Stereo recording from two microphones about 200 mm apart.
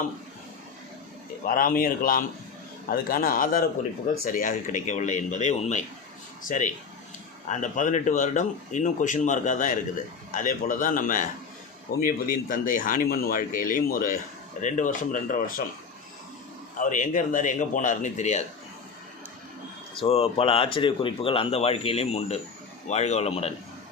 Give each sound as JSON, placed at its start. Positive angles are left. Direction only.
{"t": 1.5, "sound": "speech", "side_deg": 45}
{"t": 16.7, "sound": "speech", "side_deg": 40}
{"t": 20.0, "sound": "speech", "side_deg": 30}